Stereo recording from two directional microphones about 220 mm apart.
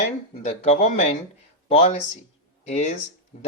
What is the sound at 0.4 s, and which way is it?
Speech, 30° left (ahead or behind).